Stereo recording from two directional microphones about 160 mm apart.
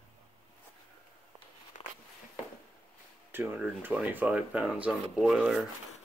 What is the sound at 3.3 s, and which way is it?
Speech, 15° right (ahead or behind).